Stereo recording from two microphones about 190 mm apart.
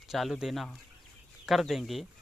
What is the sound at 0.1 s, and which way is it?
Speech, centre (ahead or behind).